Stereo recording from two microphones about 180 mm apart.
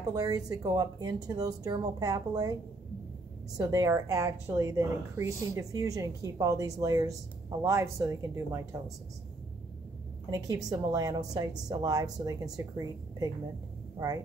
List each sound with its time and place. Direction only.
0.1 s speech: 20° right (ahead or behind)
3.5 s speech: 20° right (ahead or behind)
10.3 s speech: 20° right (ahead or behind)